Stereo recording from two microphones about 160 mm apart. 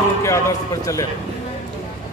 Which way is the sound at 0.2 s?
20° left (ahead or behind).